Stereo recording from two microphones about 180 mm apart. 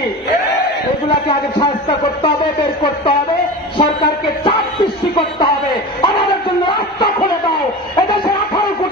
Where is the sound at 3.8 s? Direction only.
30° left (ahead or behind).